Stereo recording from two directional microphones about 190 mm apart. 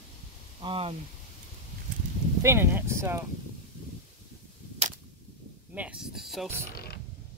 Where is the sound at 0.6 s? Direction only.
30° right (ahead or behind).